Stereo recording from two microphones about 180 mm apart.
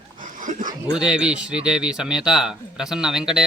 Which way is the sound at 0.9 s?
5° right (ahead or behind).